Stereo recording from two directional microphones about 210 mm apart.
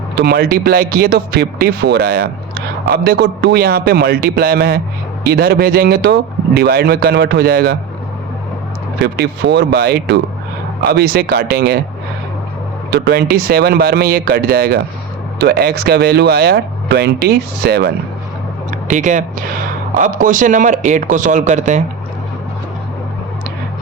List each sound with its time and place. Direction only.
0.2 s speech: 50° right (ahead or behind)
9.0 s speech: 50° right (ahead or behind)
12.9 s speech: 50° right (ahead or behind)
18.9 s speech: 35° right (ahead or behind)